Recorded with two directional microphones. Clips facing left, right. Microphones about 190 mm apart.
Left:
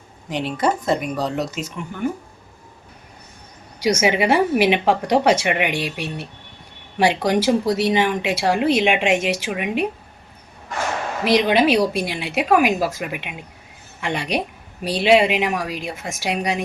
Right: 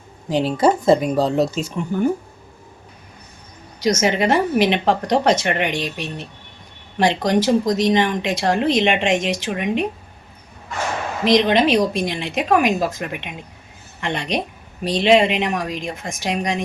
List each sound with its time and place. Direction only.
0.3 s speech: 30° right (ahead or behind)
3.8 s speech: 10° left (ahead or behind)
11.3 s speech: 10° left (ahead or behind)